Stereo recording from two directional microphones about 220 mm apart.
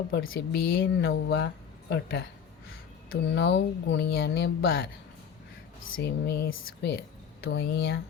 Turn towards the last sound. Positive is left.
turn(degrees=50)  # may be behind; listen again after turning